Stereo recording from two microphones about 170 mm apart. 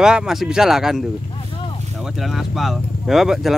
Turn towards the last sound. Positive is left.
turn(degrees=0)  # may be behind; listen again after turning